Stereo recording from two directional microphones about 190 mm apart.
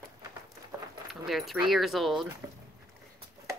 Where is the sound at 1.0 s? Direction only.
Centre (ahead or behind).